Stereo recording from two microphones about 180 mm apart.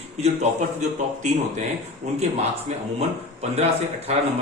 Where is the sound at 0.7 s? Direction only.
40° right (ahead or behind).